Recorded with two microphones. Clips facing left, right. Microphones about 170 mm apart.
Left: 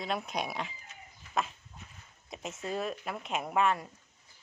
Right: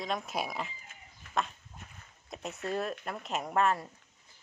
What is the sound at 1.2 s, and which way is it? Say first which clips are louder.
Livestock: even; 55° right (ahead or behind).